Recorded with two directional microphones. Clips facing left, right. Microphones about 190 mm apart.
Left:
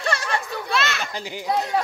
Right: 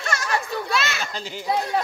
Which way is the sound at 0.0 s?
30° left (ahead or behind).